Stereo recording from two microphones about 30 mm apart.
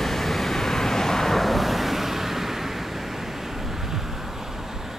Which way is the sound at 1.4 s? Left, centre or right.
Centre.